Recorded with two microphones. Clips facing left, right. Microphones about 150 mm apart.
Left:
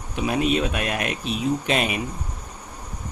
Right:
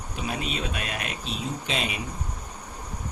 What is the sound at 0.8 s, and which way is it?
Speech, 60° left (ahead or behind).